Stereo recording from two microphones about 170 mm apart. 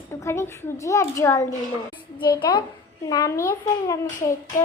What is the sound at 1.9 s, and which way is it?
A child's voice, 30° left (ahead or behind).